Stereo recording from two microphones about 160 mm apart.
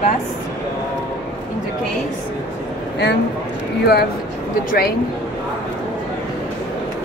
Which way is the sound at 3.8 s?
90° left.